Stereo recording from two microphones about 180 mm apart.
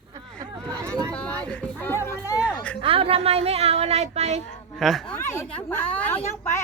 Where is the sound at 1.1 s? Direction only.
5° left (ahead or behind).